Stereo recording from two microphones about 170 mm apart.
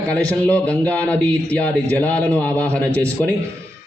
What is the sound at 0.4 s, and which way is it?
A man's voice, 10° left (ahead or behind).